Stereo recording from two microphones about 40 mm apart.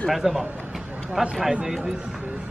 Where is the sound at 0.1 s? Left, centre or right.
Centre.